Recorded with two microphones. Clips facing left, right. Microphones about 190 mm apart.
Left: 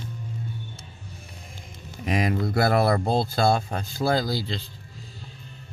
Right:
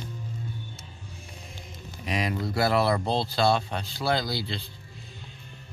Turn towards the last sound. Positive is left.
turn(degrees=40)  # may be behind; listen again after turning